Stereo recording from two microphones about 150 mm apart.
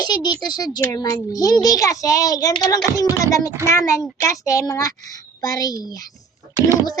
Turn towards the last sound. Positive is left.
turn(degrees=25)  # may be behind; listen again after turning